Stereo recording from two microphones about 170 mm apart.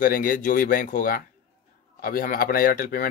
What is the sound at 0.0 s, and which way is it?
A man's voice, 55° left (ahead or behind).